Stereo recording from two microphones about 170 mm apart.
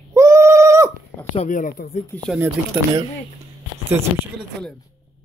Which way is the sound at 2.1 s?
10° left (ahead or behind).